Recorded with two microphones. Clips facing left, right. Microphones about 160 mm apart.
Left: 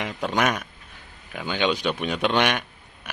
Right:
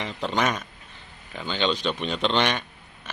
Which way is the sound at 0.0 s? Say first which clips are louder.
Left 2 dB; 10° left (ahead or behind).